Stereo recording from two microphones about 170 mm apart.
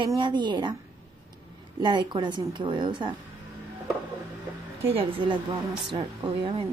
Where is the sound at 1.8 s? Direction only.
25° right (ahead or behind).